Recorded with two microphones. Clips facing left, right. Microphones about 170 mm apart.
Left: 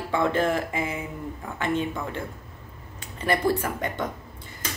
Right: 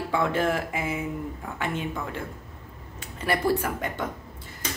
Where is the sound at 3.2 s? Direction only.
5° right (ahead or behind).